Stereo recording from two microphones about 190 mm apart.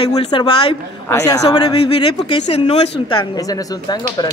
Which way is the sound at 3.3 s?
20° left (ahead or behind).